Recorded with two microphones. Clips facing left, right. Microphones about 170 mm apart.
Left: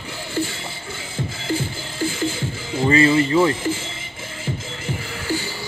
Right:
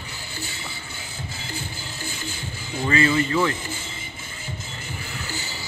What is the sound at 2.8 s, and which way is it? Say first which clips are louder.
Music: left 5 dB; 30° left (ahead or behind).